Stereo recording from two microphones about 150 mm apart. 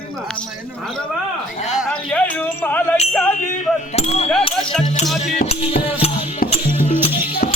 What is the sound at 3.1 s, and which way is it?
Speech, 5° left (ahead or behind).